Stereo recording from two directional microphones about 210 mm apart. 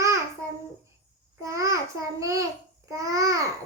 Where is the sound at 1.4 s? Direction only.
15° right (ahead or behind).